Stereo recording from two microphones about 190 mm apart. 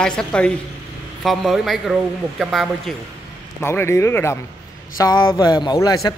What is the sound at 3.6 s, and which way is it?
Speech, 15° left (ahead or behind).